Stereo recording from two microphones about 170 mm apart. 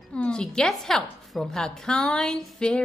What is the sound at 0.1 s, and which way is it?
A woman's voice, 5° left (ahead or behind).